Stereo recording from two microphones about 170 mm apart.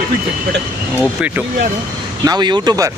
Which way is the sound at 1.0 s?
5° right (ahead or behind).